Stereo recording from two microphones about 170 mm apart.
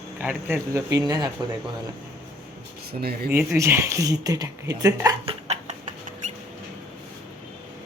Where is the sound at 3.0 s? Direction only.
65° right (ahead or behind).